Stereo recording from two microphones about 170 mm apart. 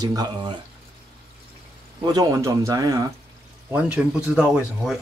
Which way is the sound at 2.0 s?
20° right (ahead or behind).